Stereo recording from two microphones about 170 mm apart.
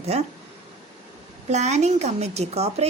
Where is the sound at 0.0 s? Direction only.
40° right (ahead or behind).